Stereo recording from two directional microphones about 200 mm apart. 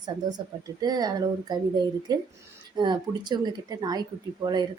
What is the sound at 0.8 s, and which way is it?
Speech, 20° right (ahead or behind).